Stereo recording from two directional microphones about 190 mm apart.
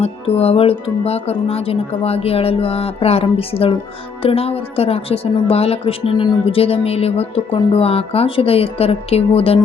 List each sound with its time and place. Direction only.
0.0 s a woman's voice: 30° left (ahead or behind)